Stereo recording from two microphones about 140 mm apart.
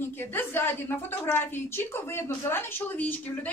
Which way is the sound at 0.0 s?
15° left (ahead or behind).